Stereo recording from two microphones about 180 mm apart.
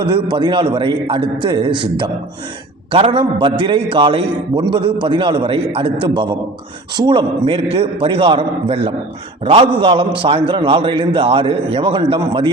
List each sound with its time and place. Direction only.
0.0 s a man's voice: 25° right (ahead or behind)